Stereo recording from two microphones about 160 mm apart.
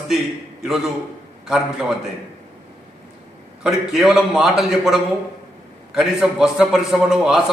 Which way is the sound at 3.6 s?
5° right (ahead or behind).